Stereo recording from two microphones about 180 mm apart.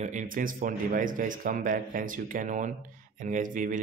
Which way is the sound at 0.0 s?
45° right (ahead or behind).